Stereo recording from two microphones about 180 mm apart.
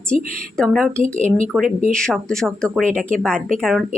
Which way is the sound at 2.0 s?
5° left (ahead or behind).